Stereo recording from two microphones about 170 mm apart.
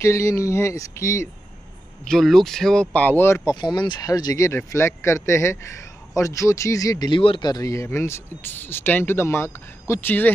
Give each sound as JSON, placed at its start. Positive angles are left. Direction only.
{"t": 0.0, "sound": "speech", "side_deg": 15}
{"t": 2.0, "sound": "speech", "side_deg": 0}
{"t": 3.5, "sound": "speech", "side_deg": 25}